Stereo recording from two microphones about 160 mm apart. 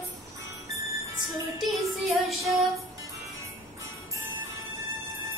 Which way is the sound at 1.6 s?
Centre (ahead or behind).